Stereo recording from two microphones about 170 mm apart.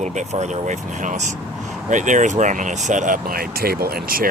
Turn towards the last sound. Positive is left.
turn(degrees=-65)  # may be behind; listen again after turning